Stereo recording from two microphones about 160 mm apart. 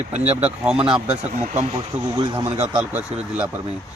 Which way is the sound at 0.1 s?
45° right (ahead or behind).